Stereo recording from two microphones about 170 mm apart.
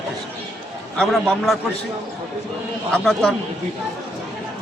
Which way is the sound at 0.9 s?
5° left (ahead or behind).